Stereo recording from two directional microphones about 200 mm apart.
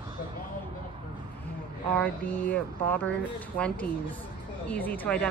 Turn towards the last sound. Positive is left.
turn(degrees=5)  # may be behind; listen again after turning